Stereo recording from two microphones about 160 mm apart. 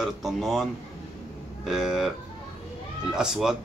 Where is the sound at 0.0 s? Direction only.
Centre (ahead or behind).